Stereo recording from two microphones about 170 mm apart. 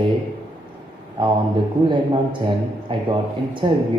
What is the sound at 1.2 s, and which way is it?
Speech, 30° right (ahead or behind).